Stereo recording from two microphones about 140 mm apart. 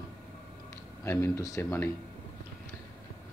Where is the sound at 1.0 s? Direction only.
20° left (ahead or behind).